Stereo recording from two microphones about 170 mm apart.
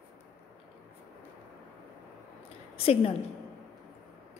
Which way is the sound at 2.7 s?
35° left (ahead or behind).